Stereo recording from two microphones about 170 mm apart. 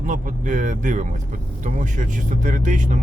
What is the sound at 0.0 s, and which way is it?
Speech, 50° right (ahead or behind).